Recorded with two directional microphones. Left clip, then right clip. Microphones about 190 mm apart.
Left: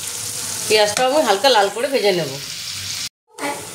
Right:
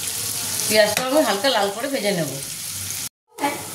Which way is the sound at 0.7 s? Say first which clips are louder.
Left 2 dB; 45° left (ahead or behind).